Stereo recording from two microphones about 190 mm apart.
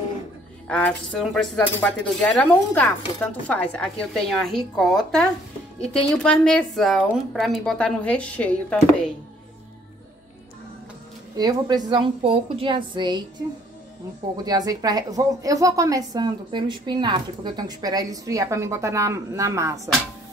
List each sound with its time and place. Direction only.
0.7 s speech: 5° left (ahead or behind)
11.3 s a woman's voice: 20° right (ahead or behind)
14.3 s a woman's voice: 20° right (ahead or behind)